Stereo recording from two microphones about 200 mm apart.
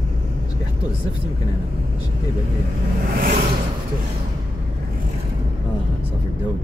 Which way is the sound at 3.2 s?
45° right (ahead or behind).